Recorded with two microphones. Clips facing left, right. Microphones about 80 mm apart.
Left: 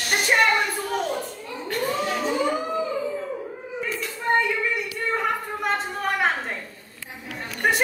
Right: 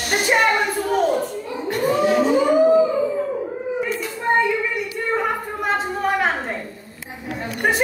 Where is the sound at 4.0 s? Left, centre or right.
Centre.